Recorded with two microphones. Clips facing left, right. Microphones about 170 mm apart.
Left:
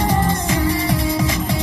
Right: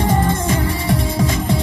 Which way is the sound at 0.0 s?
25° right (ahead or behind).